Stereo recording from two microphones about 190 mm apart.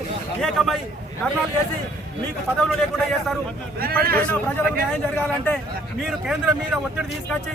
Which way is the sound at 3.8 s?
50° right (ahead or behind).